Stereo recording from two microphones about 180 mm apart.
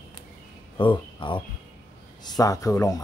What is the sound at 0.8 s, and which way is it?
A man's voice, 25° left (ahead or behind).